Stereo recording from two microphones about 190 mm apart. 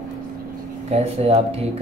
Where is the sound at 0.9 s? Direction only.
35° right (ahead or behind).